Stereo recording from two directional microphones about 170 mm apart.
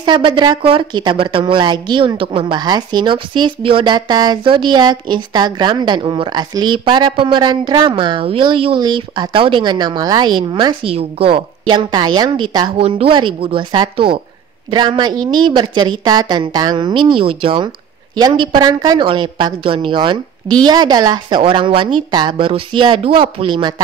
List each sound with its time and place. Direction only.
0.0 s a woman's voice: 25° right (ahead or behind)